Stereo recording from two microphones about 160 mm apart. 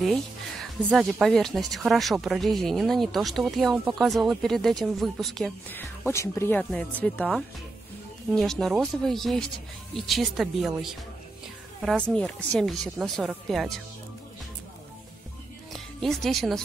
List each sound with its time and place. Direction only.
0.0 s music: centre (ahead or behind)
0.8 s speech: centre (ahead or behind)
5.7 s speech: 15° left (ahead or behind); by 11.0 s 5° right (ahead or behind)
12.1 s speech: 5° left (ahead or behind)
15.7 s speech: centre (ahead or behind)